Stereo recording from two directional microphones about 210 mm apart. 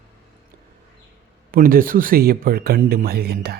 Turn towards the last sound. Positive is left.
turn(degrees=-45)  # may be behind; listen again after turning